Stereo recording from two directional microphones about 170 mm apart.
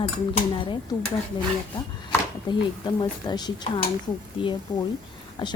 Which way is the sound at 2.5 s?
25° left (ahead or behind).